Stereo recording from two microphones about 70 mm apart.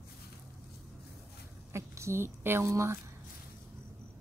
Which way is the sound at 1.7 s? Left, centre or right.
Right.